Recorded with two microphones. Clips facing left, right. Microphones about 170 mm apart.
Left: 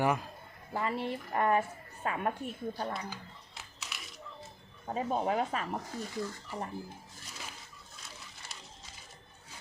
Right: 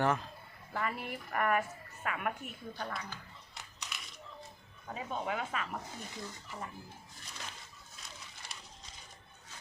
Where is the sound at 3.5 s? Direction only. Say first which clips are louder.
Right 1 dB; 5° left (ahead or behind).